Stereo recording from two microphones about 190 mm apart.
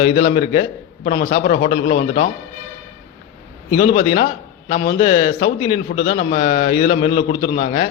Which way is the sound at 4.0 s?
30° left (ahead or behind).